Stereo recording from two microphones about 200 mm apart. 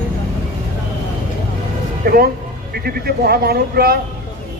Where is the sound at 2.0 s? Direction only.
50° right (ahead or behind).